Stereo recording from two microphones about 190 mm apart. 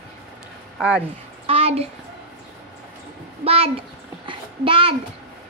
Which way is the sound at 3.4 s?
30° right (ahead or behind).